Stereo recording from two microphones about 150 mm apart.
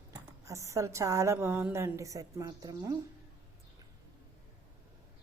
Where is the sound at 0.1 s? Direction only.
20° right (ahead or behind).